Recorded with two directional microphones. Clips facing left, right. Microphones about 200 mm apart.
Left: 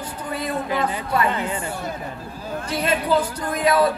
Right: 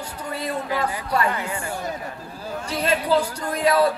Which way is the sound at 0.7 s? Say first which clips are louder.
Left 1 dB; 25° left (ahead or behind).